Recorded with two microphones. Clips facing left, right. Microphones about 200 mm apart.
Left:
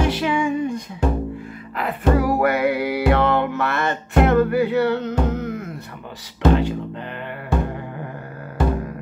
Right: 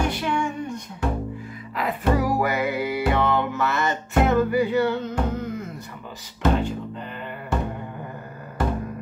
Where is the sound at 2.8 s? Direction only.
65° left (ahead or behind).